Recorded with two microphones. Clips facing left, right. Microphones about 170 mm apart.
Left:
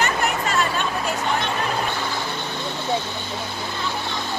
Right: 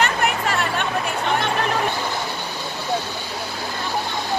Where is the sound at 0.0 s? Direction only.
60° right (ahead or behind).